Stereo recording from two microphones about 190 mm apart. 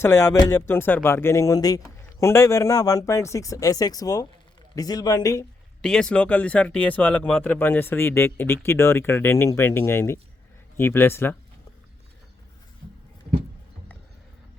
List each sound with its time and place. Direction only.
0.0 s speech: 20° left (ahead or behind)
5.8 s speech: 5° left (ahead or behind)